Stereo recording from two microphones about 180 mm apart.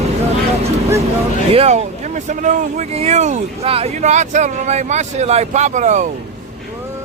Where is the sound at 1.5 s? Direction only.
35° right (ahead or behind).